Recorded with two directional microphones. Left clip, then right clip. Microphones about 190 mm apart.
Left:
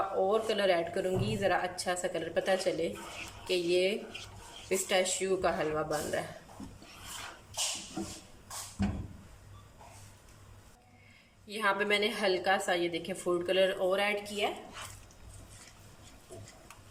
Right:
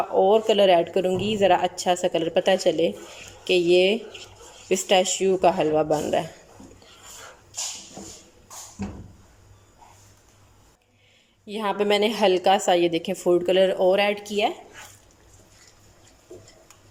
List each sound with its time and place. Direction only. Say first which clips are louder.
0.2 s a woman's voice: right 13 dB; 40° right (ahead or behind)
11.4 s a woman's voice: right 6 dB; 40° right (ahead or behind)